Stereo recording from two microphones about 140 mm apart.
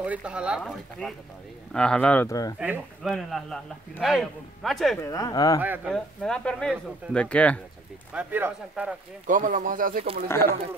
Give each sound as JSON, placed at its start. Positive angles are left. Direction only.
{"t": 0.0, "sound": "speech", "side_deg": -5}
{"t": 0.6, "sound": "a man's voice", "side_deg": 5}
{"t": 2.2, "sound": "speech", "side_deg": 25}
{"t": 3.0, "sound": "a man's voice", "side_deg": 0}
{"t": 5.0, "sound": "speech", "side_deg": 25}
{"t": 5.6, "sound": "speech", "side_deg": -15}
{"t": 5.9, "sound": "a man's voice", "side_deg": 5}
{"t": 8.1, "sound": "speech", "side_deg": -10}
{"t": 9.3, "sound": "speech", "side_deg": -70}
{"t": 10.2, "sound": "speech", "side_deg": 20}